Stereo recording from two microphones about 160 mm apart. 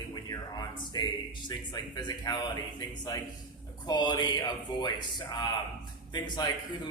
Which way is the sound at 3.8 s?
25° left (ahead or behind).